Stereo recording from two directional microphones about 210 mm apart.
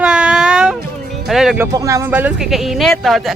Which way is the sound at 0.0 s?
5° right (ahead or behind).